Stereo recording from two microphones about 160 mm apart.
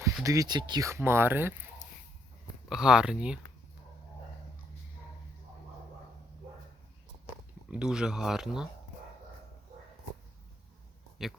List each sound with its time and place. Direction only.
0.0 s speech: 20° right (ahead or behind)
2.6 s speech: 5° right (ahead or behind)
7.7 s speech: 5° right (ahead or behind)
11.2 s speech: centre (ahead or behind)